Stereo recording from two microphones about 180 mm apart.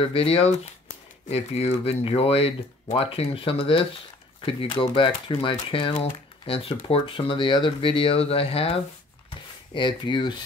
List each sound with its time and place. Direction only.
0.0 s speech: 30° left (ahead or behind)